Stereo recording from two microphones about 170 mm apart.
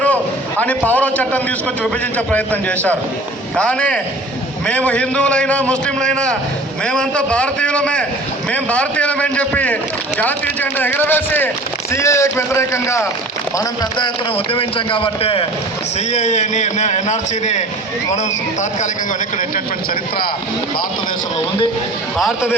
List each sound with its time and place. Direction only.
0.9 s a man's voice: 10° left (ahead or behind)
14.0 s a man's voice: 30° left (ahead or behind)
16.1 s a man's voice: 45° left (ahead or behind)
22.2 s a man's voice: centre (ahead or behind)